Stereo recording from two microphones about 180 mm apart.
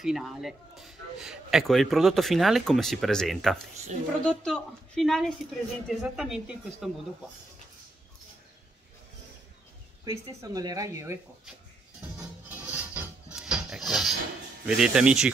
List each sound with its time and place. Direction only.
0.0 s speech: centre (ahead or behind)
10.0 s speech: 20° right (ahead or behind)
12.2 s music: 5° right (ahead or behind)
14.7 s speech: 5° right (ahead or behind)